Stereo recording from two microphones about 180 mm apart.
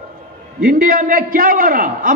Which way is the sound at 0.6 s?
50° right (ahead or behind).